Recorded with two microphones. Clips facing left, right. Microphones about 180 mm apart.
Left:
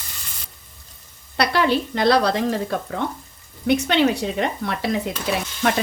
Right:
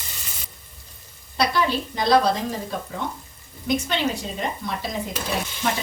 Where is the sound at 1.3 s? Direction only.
70° left (ahead or behind).